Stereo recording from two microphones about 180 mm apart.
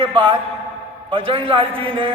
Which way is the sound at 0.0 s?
30° right (ahead or behind).